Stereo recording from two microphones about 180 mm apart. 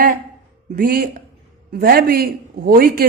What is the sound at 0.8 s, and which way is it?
A man's voice, 55° right (ahead or behind).